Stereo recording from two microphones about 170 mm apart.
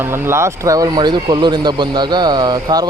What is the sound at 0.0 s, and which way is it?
Speech, 15° right (ahead or behind).